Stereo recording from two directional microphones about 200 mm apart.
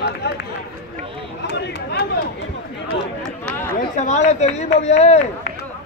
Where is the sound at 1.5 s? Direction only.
55° left (ahead or behind).